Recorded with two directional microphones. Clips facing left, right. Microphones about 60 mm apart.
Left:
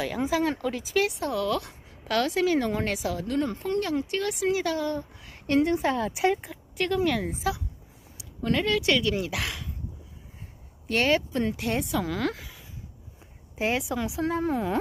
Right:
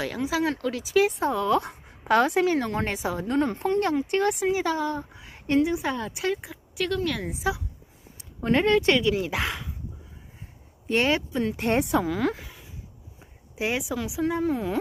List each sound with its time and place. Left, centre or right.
0.3 s speech: centre
0.8 s speech: centre
1.3 s a woman's voice: right
2.6 s speech: centre
2.9 s a woman's voice: right
4.6 s speech: centre
5.6 s speech: centre
8.2 s speech: right
9.2 s speech: centre
10.9 s speech: centre
11.5 s a woman's voice: right
12.0 s speech: centre